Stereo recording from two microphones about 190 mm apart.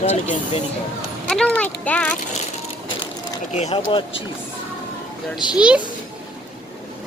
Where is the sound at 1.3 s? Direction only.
5° left (ahead or behind).